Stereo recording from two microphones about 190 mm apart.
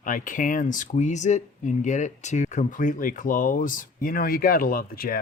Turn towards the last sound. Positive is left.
turn(degrees=50)  # may be behind; listen again after turning